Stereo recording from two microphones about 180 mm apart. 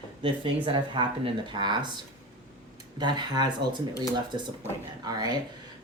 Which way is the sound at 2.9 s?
25° right (ahead or behind).